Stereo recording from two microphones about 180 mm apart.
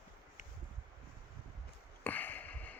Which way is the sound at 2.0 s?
10° left (ahead or behind).